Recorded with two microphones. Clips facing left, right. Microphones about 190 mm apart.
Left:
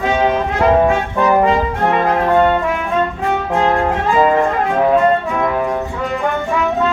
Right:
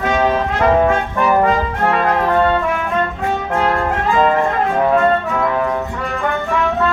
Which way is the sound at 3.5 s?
15° left (ahead or behind).